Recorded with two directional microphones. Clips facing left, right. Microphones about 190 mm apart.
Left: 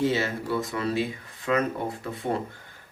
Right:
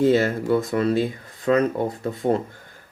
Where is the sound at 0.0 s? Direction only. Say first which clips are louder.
Right 7 dB; 50° right (ahead or behind).